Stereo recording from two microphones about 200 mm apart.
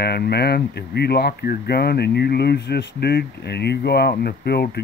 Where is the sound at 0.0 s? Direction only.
55° left (ahead or behind).